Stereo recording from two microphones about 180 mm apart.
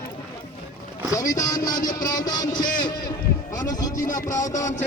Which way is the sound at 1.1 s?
20° left (ahead or behind).